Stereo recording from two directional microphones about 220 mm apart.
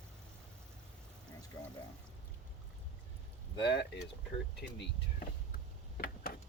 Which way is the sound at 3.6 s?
20° left (ahead or behind).